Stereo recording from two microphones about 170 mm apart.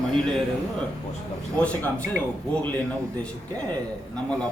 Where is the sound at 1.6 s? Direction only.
10° left (ahead or behind).